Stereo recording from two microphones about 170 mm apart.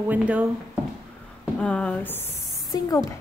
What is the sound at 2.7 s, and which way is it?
Speech, 20° left (ahead or behind).